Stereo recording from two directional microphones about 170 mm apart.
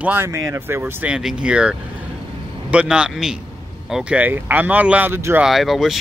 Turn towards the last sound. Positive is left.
turn(degrees=0)  # may be behind; listen again after turning